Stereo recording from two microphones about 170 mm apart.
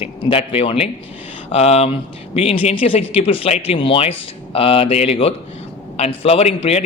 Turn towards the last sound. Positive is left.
turn(degrees=40)  # may be behind; listen again after turning